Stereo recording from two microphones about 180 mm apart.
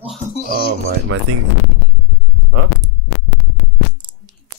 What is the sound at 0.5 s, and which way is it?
Speech, 60° left (ahead or behind).